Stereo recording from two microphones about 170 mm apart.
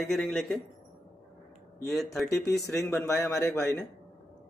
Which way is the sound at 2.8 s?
15° left (ahead or behind).